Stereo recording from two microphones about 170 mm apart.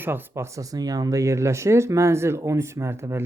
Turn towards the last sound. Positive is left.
turn(degrees=-15)  # may be behind; listen again after turning